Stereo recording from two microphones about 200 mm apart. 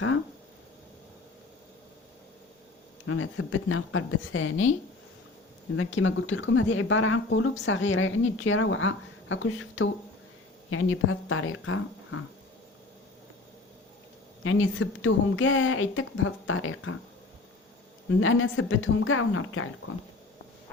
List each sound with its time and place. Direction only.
3.1 s a woman's voice: 90° left
5.7 s a woman's voice: 85° left
10.7 s a woman's voice: 90° left
14.4 s a woman's voice: 90° left
18.1 s a woman's voice: 85° left